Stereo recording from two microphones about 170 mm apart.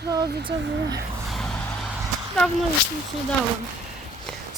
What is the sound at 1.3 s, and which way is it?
Vehicle, centre (ahead or behind).